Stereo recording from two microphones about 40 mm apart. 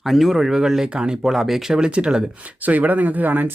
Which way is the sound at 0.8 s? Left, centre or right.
Right.